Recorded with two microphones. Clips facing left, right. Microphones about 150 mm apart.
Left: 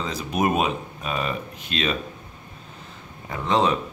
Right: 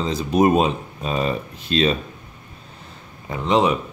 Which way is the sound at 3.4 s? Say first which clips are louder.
Right 3 dB; 15° right (ahead or behind).